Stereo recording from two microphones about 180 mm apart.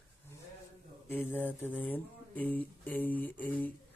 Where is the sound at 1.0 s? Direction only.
10° left (ahead or behind).